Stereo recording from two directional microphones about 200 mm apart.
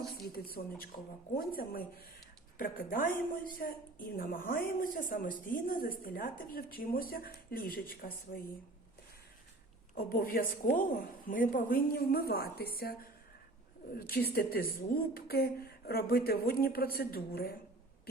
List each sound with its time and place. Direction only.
0.3 s a woman's voice: 50° left (ahead or behind)
9.9 s a woman's voice: 50° left (ahead or behind)
14.3 s a woman's voice: 50° left (ahead or behind)